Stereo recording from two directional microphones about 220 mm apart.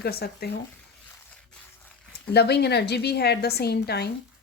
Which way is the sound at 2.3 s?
50° left (ahead or behind).